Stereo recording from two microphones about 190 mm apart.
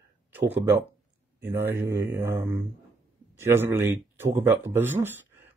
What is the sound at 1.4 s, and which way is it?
Speech, 10° right (ahead or behind).